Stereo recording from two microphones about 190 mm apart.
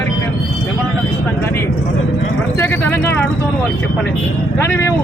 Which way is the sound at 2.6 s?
10° left (ahead or behind).